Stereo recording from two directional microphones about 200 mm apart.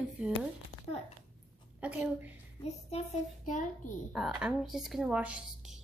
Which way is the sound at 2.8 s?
35° left (ahead or behind).